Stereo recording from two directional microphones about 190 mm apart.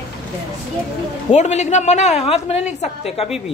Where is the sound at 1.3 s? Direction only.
35° left (ahead or behind).